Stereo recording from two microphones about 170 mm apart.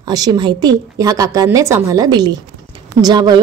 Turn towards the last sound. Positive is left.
turn(degrees=-25)  # may be behind; listen again after turning